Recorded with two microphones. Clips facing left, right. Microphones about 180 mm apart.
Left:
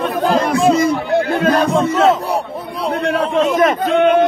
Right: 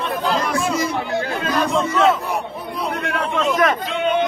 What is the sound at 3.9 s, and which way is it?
Speech, 50° left (ahead or behind).